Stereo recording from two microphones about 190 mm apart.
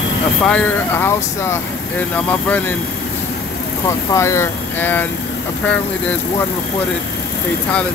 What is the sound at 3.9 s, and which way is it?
Speech, 15° left (ahead or behind).